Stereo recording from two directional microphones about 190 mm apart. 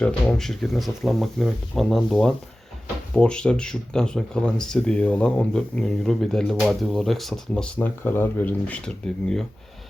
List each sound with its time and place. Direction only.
0.0 s speech: 5° left (ahead or behind)